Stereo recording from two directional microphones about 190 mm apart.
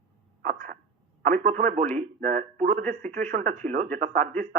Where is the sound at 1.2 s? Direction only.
40° right (ahead or behind).